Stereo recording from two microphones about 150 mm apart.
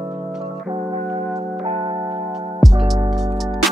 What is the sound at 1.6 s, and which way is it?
Music, 35° right (ahead or behind).